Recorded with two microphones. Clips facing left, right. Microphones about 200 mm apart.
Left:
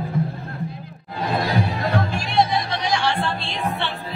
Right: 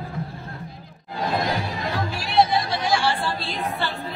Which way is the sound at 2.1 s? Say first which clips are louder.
Even; 5° right (ahead or behind).